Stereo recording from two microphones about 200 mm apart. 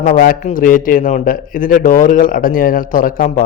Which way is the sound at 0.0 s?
40° left (ahead or behind).